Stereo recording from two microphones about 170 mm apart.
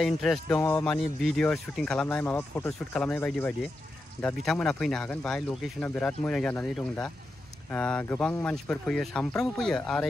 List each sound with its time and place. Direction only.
0.0 s speech: centre (ahead or behind)